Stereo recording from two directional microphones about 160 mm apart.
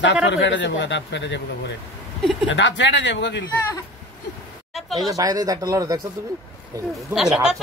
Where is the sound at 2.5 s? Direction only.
90° left.